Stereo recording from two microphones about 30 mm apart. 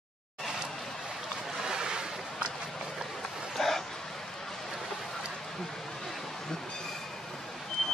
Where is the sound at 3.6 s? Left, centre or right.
Centre.